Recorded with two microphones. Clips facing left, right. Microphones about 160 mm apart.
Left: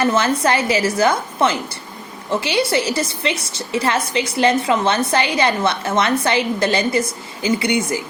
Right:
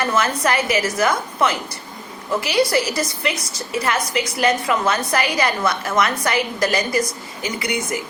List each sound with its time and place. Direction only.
0.0 s a woman's voice: 30° left (ahead or behind)